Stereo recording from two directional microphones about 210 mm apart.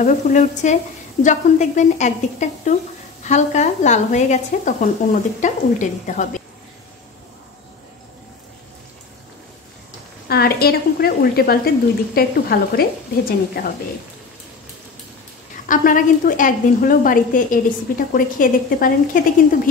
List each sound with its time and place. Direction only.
0.0 s a woman's voice: 35° left (ahead or behind)
10.2 s speech: 50° left (ahead or behind)
15.7 s a woman's voice: 40° left (ahead or behind)